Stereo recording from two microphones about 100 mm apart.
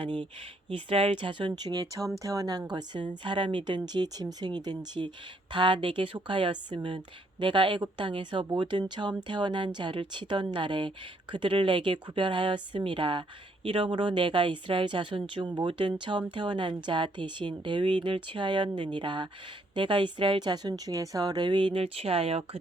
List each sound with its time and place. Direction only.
0.0 s speech: 55° right (ahead or behind)
0.7 s speech: 65° right (ahead or behind); by 2.6 s 40° right (ahead or behind)
2.7 s speech: 50° right (ahead or behind)
5.0 s a woman's voice: 55° right (ahead or behind); by 22.4 s 80° right